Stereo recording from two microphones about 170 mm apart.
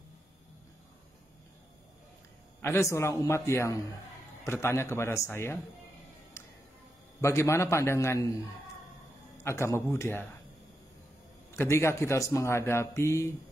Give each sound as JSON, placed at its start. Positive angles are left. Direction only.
{"t": 2.6, "sound": "a man's voice", "side_deg": 15}
{"t": 7.2, "sound": "a man's voice", "side_deg": 15}
{"t": 9.4, "sound": "a man's voice", "side_deg": 15}
{"t": 11.5, "sound": "a man's voice", "side_deg": 15}